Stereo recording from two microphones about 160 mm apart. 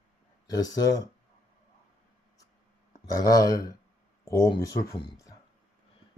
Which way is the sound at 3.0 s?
20° left (ahead or behind).